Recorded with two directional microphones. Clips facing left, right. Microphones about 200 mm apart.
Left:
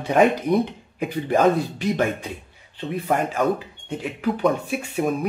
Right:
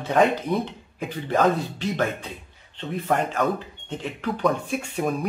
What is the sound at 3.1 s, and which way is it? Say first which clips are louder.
Speech: left 2 dB; 10° left (ahead or behind).